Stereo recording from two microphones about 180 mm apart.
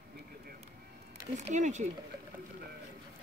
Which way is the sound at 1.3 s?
40° right (ahead or behind).